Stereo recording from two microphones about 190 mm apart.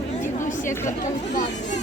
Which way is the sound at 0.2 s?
40° left (ahead or behind).